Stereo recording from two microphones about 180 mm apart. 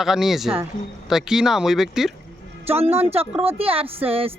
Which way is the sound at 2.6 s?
35° right (ahead or behind).